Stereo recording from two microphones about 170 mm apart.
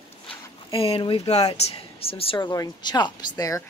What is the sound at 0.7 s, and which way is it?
Speech, 35° left (ahead or behind).